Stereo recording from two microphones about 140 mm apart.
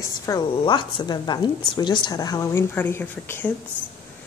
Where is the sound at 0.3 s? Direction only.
35° left (ahead or behind); by 3.5 s 15° left (ahead or behind).